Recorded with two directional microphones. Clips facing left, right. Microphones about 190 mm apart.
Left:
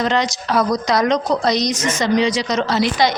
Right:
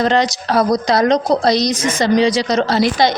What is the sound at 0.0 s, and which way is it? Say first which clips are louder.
A woman's voice: right 4 dB; 35° right (ahead or behind).